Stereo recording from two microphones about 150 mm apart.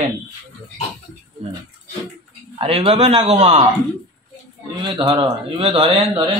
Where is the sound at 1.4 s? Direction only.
45° right (ahead or behind).